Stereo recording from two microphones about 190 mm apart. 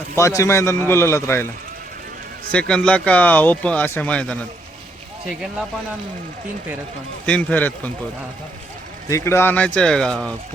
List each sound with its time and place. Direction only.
0.2 s speech: 15° left (ahead or behind)
2.5 s speech: 5° left (ahead or behind)
7.3 s speech: 10° left (ahead or behind)
9.0 s speech: 15° left (ahead or behind)